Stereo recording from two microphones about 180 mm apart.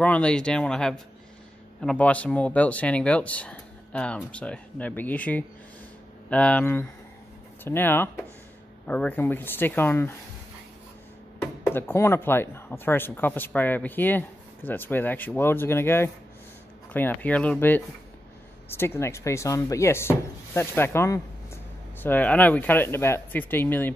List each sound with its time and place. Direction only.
0.0 s speech: 5° left (ahead or behind)
11.6 s speech: 15° left (ahead or behind)